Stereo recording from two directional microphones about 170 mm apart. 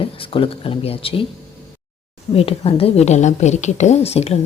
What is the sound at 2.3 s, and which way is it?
A woman's voice, 35° left (ahead or behind).